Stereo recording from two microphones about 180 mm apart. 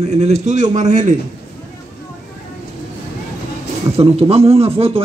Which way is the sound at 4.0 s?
35° right (ahead or behind).